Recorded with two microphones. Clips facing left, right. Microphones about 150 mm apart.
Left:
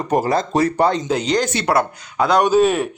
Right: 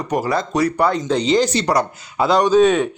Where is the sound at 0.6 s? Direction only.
20° left (ahead or behind).